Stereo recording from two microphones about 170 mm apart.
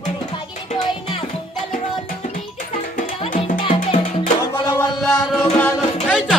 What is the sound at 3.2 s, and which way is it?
Music, 35° left (ahead or behind).